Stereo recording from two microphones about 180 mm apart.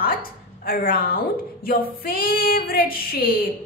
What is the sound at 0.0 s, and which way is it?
A woman's voice, 55° left (ahead or behind).